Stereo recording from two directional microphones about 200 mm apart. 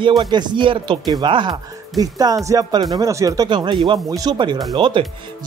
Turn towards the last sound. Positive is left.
turn(degrees=-25)  # may be behind; listen again after turning